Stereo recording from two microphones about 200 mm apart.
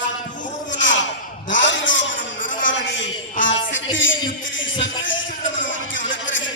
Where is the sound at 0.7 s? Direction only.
65° left (ahead or behind).